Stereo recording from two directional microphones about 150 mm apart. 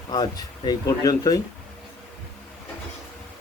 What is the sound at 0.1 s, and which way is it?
Speech, 25° left (ahead or behind).